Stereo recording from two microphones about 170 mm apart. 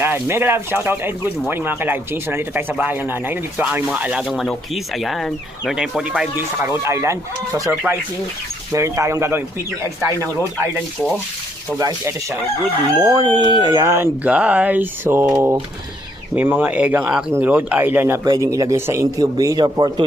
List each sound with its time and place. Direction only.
0.0 s speech: 15° right (ahead or behind)
6.6 s speech: 15° right (ahead or behind)
11.8 s a man's voice: 20° right (ahead or behind)